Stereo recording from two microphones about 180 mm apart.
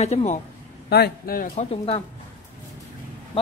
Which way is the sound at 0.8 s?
60° left (ahead or behind).